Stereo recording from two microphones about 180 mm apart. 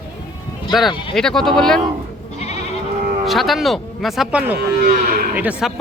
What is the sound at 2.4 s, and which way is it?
Goat, 40° left (ahead or behind).